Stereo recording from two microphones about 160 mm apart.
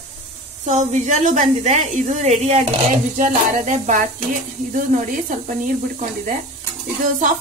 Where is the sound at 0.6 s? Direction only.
45° right (ahead or behind).